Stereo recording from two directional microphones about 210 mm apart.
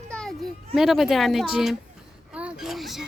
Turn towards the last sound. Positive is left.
turn(degrees=0)  # may be behind; listen again after turning